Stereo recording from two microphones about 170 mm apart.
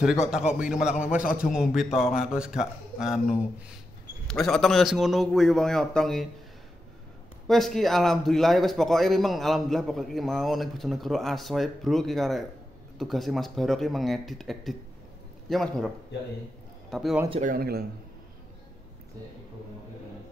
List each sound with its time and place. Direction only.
0.3 s a man's voice: 5° right (ahead or behind)
7.4 s a man's voice: centre (ahead or behind)
16.9 s a man's voice: centre (ahead or behind)
17.4 s speech: 55° right (ahead or behind)